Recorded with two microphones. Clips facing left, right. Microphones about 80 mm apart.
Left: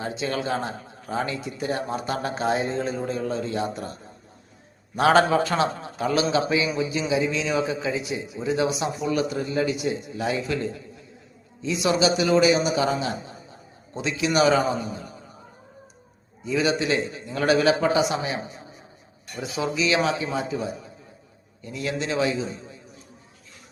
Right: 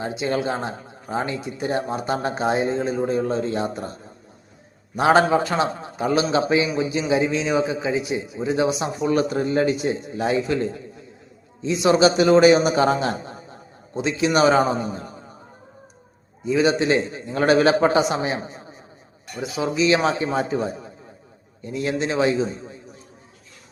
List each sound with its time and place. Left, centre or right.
0.0 s a man's voice: centre
4.9 s a man's voice: right
13.9 s a man's voice: right
16.4 s a man's voice: right
19.4 s a man's voice: right
21.6 s a man's voice: right